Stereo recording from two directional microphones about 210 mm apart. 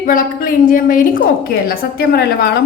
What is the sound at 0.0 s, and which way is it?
A woman's voice, 40° left (ahead or behind).